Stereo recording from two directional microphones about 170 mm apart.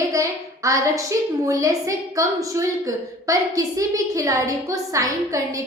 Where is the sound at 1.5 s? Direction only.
20° right (ahead or behind).